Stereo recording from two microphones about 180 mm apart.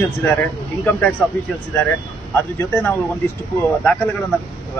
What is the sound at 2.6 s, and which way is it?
Speech, 10° left (ahead or behind).